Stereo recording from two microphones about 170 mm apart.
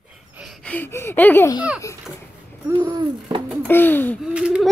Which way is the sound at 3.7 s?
10° left (ahead or behind).